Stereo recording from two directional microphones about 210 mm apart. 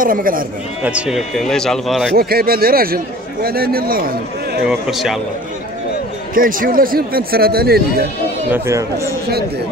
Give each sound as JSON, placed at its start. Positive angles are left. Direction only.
{"t": 0.0, "sound": "speech", "side_deg": -40}
{"t": 0.8, "sound": "speech", "side_deg": -5}
{"t": 2.1, "sound": "speech", "side_deg": -45}
{"t": 4.6, "sound": "speech", "side_deg": 0}
{"t": 6.3, "sound": "speech", "side_deg": -40}
{"t": 8.5, "sound": "speech", "side_deg": -15}